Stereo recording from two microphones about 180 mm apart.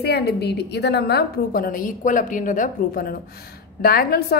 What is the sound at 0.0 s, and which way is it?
A woman's voice, 65° left (ahead or behind).